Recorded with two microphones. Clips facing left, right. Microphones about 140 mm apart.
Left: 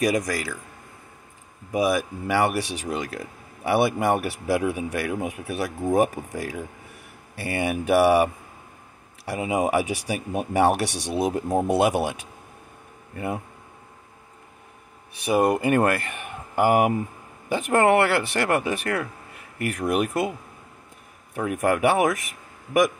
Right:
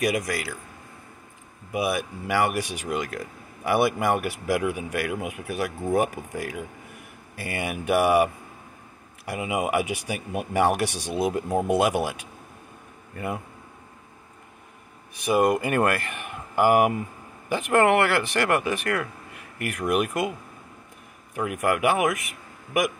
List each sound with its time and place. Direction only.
0.0 s speech: 35° left (ahead or behind)
1.7 s speech: 40° left (ahead or behind)
15.2 s speech: 30° left (ahead or behind)
17.6 s speech: 35° left (ahead or behind)
21.4 s speech: 35° left (ahead or behind)